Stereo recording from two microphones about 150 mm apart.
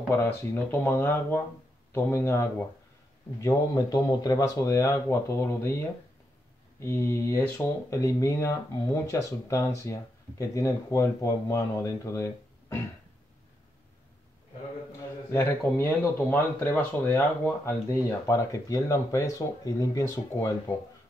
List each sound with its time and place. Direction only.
0.1 s speech: 15° left (ahead or behind)
6.8 s speech: 20° left (ahead or behind)
15.3 s speech: 15° left (ahead or behind)